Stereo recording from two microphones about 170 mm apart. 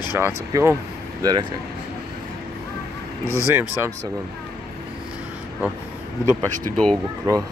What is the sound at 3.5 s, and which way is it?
Speech, 15° right (ahead or behind).